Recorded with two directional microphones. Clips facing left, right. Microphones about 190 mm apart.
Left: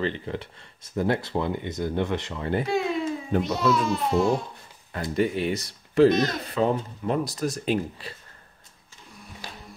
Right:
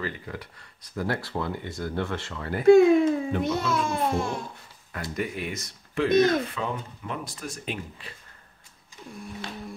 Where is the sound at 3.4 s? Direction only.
50° right (ahead or behind).